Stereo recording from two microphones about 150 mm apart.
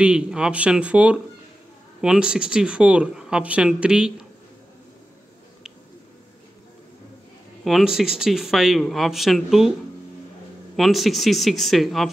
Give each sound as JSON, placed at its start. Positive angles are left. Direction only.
{"t": 0.0, "sound": "speech", "side_deg": -5}
{"t": 7.6, "sound": "speech", "side_deg": 0}
{"t": 10.8, "sound": "speech", "side_deg": 0}